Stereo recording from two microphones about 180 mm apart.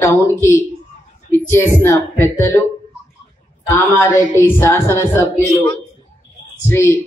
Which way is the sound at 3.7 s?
15° left (ahead or behind).